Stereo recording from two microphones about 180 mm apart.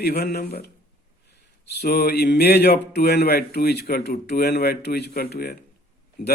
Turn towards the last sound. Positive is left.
turn(degrees=55)  # may be behind; listen again after turning